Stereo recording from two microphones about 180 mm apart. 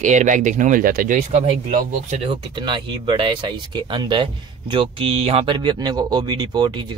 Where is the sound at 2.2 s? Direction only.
25° right (ahead or behind).